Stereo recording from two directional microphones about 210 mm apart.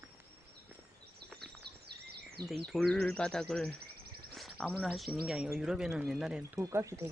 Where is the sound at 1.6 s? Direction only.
50° right (ahead or behind).